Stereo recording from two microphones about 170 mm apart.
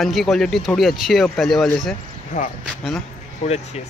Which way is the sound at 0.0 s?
Centre (ahead or behind).